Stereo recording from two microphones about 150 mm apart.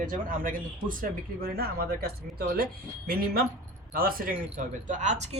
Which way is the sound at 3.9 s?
70° right (ahead or behind).